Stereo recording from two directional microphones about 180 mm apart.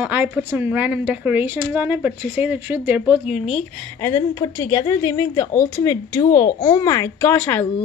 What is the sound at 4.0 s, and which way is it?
A woman's voice, 15° left (ahead or behind).